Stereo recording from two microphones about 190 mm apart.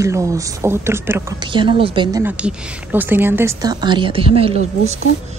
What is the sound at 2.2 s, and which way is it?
A woman's voice, 5° right (ahead or behind).